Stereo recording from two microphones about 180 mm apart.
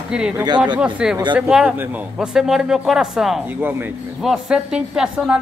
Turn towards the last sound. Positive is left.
turn(degrees=-5)  # may be behind; listen again after turning